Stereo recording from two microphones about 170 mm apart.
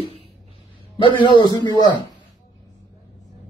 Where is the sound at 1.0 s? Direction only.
30° left (ahead or behind).